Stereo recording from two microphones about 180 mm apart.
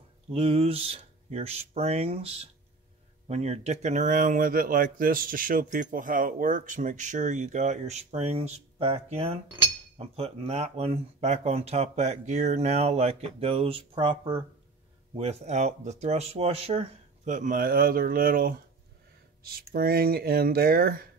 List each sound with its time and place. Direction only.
0.3 s speech: 30° right (ahead or behind); by 21.1 s 55° right (ahead or behind)